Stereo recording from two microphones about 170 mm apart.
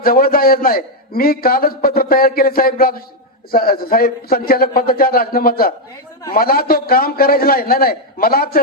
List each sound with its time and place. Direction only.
0.0 s a man's voice: 60° left (ahead or behind)